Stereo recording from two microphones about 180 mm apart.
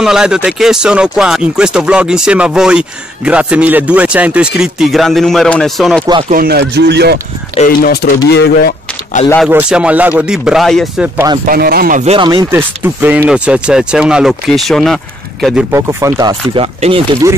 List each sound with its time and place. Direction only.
0.0 s speech: 5° right (ahead or behind)
6.3 s speech: 60° right (ahead or behind)
7.5 s speech: 50° left (ahead or behind)
9.5 s speech: 5° right (ahead or behind)
11.4 s speech: 55° right (ahead or behind)
12.0 s speech: 35° right (ahead or behind)
12.4 s speech: 10° right (ahead or behind)
15.7 s speech: 15° right (ahead or behind); by 17.0 s 30° right (ahead or behind)